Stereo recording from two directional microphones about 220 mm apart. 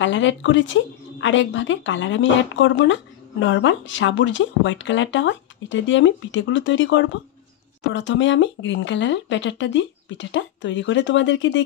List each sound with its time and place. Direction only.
0.0 s speech: 60° left (ahead or behind)